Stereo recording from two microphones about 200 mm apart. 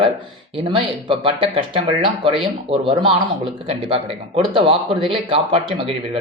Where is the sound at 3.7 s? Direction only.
30° right (ahead or behind).